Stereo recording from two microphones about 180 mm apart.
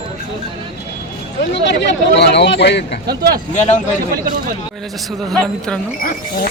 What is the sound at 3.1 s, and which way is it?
Speech, 60° right (ahead or behind).